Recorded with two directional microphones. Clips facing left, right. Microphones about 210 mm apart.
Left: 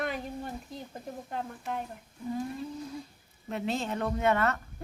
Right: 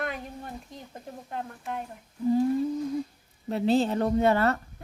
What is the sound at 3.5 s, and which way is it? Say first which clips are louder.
A woman's voice: right 8 dB; 35° right (ahead or behind).